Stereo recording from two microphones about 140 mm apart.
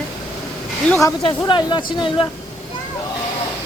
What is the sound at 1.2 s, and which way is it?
Speech, 35° left (ahead or behind).